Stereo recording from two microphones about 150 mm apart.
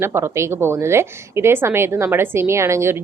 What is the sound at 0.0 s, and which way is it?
A woman's voice, 15° right (ahead or behind).